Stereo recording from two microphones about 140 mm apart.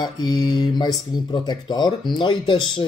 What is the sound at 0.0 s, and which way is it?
Speech, 30° left (ahead or behind).